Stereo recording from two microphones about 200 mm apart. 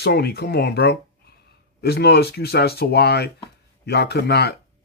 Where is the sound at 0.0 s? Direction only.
55° left (ahead or behind).